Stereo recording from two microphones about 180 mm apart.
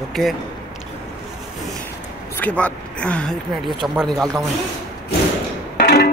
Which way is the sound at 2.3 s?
10° left (ahead or behind).